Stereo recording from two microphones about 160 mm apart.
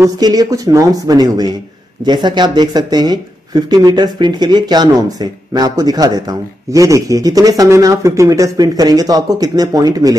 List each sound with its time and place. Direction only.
0.0 s speech: 25° right (ahead or behind)